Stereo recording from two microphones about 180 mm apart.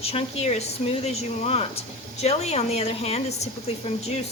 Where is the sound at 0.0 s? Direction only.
35° left (ahead or behind).